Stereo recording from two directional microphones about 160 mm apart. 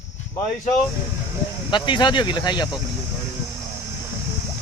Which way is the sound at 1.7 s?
30° left (ahead or behind).